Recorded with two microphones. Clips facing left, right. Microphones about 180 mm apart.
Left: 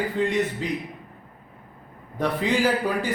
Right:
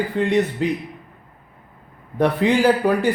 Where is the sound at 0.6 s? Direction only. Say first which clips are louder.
Right 7 dB; 70° right (ahead or behind).